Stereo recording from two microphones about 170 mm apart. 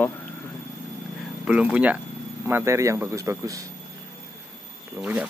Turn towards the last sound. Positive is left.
turn(degrees=-5)  # may be behind; listen again after turning